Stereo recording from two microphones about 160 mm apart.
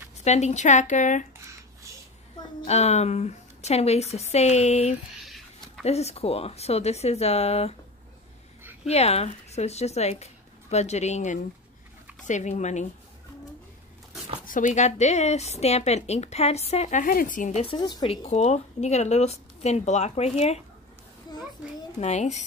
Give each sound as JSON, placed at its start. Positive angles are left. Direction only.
{"t": 0.2, "sound": "a woman's voice", "side_deg": 45}
{"t": 2.6, "sound": "a woman's voice", "side_deg": 45}
{"t": 5.2, "sound": "a sound", "side_deg": 0}
{"t": 5.9, "sound": "a woman's voice", "side_deg": 40}
{"t": 8.8, "sound": "a woman's voice", "side_deg": 40}
{"t": 14.4, "sound": "a woman's voice", "side_deg": 55}
{"t": 17.7, "sound": "speech", "side_deg": 30}
{"t": 18.1, "sound": "a woman's voice", "side_deg": 45}
{"t": 22.0, "sound": "a woman's voice", "side_deg": 45}